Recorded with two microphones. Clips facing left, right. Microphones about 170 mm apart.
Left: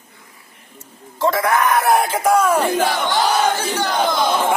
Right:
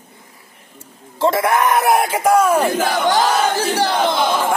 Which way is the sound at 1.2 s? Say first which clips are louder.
Right 1 dB; 25° right (ahead or behind).